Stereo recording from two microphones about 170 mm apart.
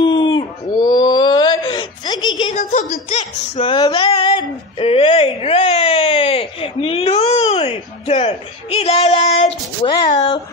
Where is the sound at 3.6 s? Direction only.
25° left (ahead or behind).